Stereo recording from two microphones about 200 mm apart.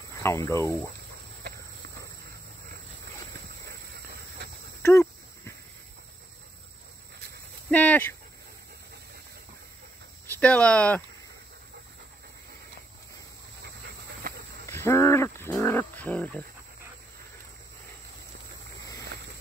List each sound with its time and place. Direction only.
0.2 s speech: 15° left (ahead or behind)
3.6 s hiss: 55° right (ahead or behind)
4.8 s dog: 15° left (ahead or behind)
7.7 s dog: 10° left (ahead or behind)
10.3 s speech: 5° left (ahead or behind)
14.7 s wild animals: 15° left (ahead or behind)